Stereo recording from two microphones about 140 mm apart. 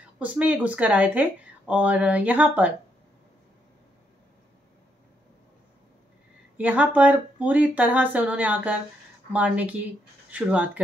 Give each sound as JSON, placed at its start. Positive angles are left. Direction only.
{"t": 0.2, "sound": "speech", "side_deg": -10}
{"t": 6.5, "sound": "speech", "side_deg": -10}